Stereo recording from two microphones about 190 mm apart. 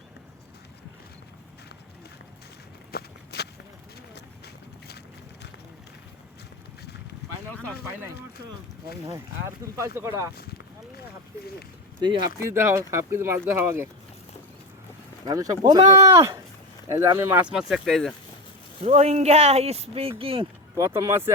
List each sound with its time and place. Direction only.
2.9 s walk: 60° left (ahead or behind)
4.1 s boat: 60° left (ahead or behind)
9.7 s speech: 15° right (ahead or behind)
11.9 s speech: 25° right (ahead or behind)
15.2 s speech: 20° right (ahead or behind); by 18.1 s centre (ahead or behind)
18.8 s speech: 35° right (ahead or behind)
20.7 s speech: 15° right (ahead or behind)